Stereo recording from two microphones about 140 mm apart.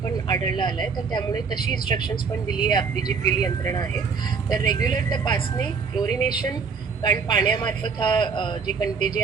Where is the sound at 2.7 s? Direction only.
30° left (ahead or behind).